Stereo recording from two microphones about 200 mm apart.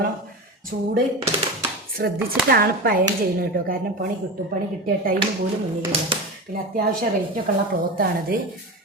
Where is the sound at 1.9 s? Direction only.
50° right (ahead or behind).